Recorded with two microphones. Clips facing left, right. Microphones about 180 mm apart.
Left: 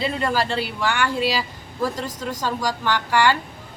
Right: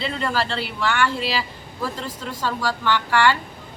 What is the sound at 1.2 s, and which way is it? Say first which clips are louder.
A woman's voice: left 3 dB; 45° left (ahead or behind).